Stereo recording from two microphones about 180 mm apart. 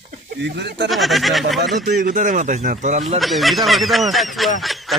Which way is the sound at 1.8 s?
55° right (ahead or behind).